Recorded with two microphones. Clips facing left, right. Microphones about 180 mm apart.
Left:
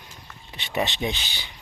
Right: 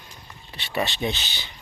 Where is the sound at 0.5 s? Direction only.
20° left (ahead or behind).